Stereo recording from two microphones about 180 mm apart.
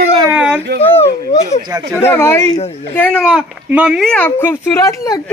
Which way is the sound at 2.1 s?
15° left (ahead or behind).